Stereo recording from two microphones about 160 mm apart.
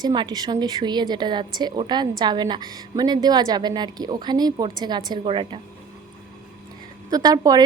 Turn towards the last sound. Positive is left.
turn(degrees=-25)  # may be behind; listen again after turning